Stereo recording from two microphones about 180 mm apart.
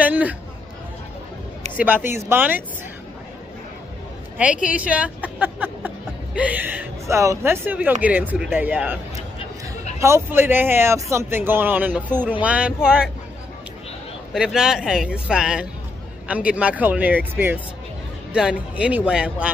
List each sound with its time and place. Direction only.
0.0 s chatter: 10° right (ahead or behind)
1.8 s speech: 10° right (ahead or behind)
4.6 s speech: 5° right (ahead or behind)
14.3 s speech: 5° right (ahead or behind)